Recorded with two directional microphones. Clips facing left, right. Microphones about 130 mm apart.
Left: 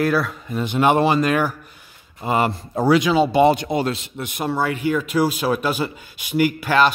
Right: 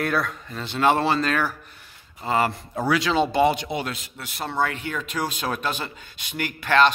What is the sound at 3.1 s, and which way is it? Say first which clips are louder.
Speech: left 5 dB; 5° left (ahead or behind).